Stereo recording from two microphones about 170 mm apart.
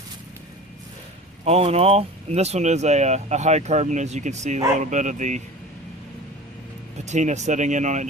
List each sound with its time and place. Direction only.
1.5 s speech: 35° right (ahead or behind)
7.0 s speech: 45° right (ahead or behind)